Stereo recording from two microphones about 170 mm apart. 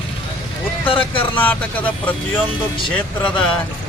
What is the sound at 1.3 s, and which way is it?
Speech, 10° left (ahead or behind).